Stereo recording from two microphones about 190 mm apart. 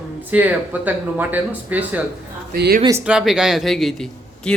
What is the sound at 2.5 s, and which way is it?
Speech, 50° right (ahead or behind).